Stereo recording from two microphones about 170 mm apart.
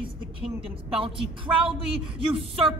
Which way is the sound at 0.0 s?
30° right (ahead or behind).